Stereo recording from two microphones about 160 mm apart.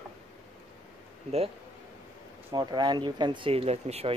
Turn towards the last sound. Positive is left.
turn(degrees=-40)  # may be behind; listen again after turning